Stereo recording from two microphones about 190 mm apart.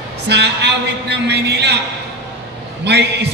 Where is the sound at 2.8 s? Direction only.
65° right (ahead or behind).